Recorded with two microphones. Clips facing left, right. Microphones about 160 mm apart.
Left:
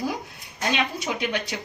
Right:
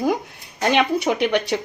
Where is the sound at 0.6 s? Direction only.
70° right (ahead or behind).